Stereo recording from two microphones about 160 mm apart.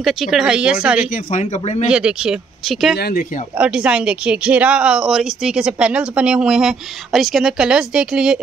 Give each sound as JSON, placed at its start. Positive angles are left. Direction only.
{"t": 0.0, "sound": "speech", "side_deg": 0}
{"t": 1.4, "sound": "speech", "side_deg": 40}
{"t": 1.9, "sound": "speech", "side_deg": -5}
{"t": 3.0, "sound": "speech", "side_deg": 75}
{"t": 3.5, "sound": "speech", "side_deg": -5}